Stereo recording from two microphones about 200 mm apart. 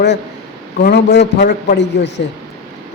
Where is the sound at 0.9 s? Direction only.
60° left (ahead or behind).